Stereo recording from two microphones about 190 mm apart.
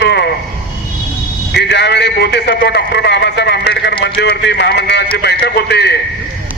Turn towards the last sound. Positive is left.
turn(degrees=60)  # may be behind; listen again after turning